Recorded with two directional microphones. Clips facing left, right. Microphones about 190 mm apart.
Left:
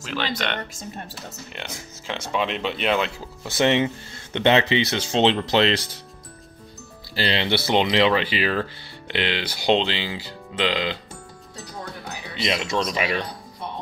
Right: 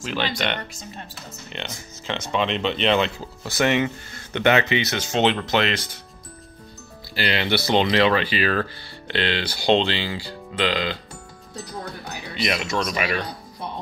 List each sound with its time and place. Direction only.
0.1 s speech: 5° right (ahead or behind)
0.7 s speech: 50° left (ahead or behind)
1.5 s speech: 5° left (ahead or behind)
3.4 s speech: 25° left (ahead or behind)
7.2 s speech: 30° left (ahead or behind)
12.4 s speech: 20° left (ahead or behind)